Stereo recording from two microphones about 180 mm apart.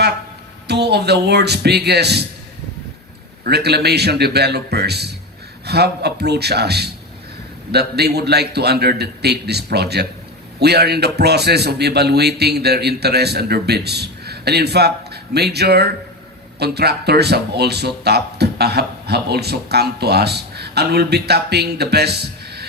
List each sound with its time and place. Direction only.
0.7 s speech: 65° right (ahead or behind)
3.4 s speech: 65° right (ahead or behind)